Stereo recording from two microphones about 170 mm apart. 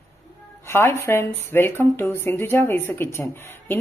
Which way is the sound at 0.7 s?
15° left (ahead or behind).